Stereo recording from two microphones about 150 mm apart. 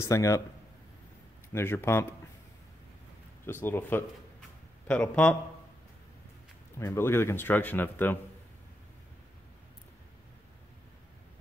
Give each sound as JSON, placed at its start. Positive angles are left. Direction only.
{"t": 0.0, "sound": "speech", "side_deg": 20}
{"t": 1.5, "sound": "a man's voice", "side_deg": 15}
{"t": 3.4, "sound": "a man's voice", "side_deg": 15}
{"t": 6.8, "sound": "a man's voice", "side_deg": 15}